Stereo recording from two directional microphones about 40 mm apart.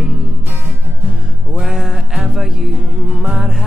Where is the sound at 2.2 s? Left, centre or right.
Centre.